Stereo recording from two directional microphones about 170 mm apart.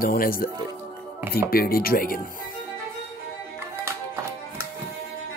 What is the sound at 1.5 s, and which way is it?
Speech, 60° left (ahead or behind).